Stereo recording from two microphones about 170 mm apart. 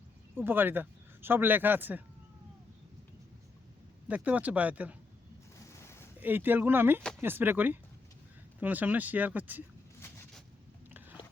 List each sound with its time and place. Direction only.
0.3 s speech: 10° right (ahead or behind)
4.1 s speech: 10° right (ahead or behind)
5.5 s a sound: 15° left (ahead or behind)
6.1 s speech: 10° right (ahead or behind)
10.9 s biting: 10° right (ahead or behind)